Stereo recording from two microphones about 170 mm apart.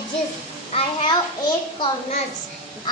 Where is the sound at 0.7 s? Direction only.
35° left (ahead or behind).